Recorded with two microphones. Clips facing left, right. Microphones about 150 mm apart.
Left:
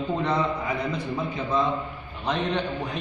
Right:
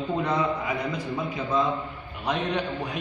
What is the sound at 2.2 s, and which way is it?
Speech, 15° right (ahead or behind).